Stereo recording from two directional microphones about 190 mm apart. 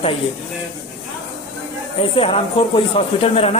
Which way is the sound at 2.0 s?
30° left (ahead or behind).